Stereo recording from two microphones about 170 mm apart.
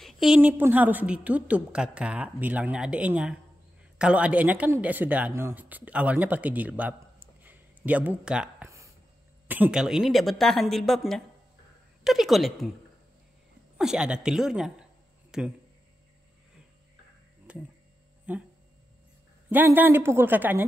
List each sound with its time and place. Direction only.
0.0 s a woman's voice: centre (ahead or behind)
8.6 s a sound: 15° right (ahead or behind)
9.5 s speech: 5° right (ahead or behind)
13.7 s speech: 5° right (ahead or behind)
17.5 s speech: 5° right (ahead or behind)
19.5 s a woman's voice: 10° right (ahead or behind)